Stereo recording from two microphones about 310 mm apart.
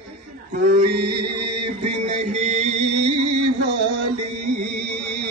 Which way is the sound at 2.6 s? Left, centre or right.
Right.